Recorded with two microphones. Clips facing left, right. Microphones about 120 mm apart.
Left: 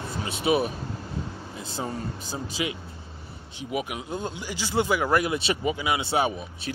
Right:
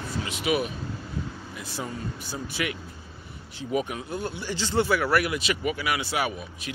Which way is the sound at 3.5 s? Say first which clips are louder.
Right 2 dB; 10° left (ahead or behind).